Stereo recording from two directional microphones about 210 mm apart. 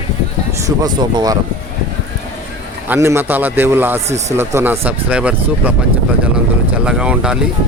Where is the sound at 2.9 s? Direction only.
10° right (ahead or behind).